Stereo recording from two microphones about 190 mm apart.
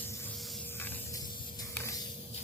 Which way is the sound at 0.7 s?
10° left (ahead or behind).